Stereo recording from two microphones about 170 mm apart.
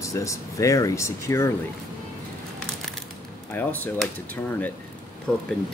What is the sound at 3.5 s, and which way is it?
Speech, 10° left (ahead or behind).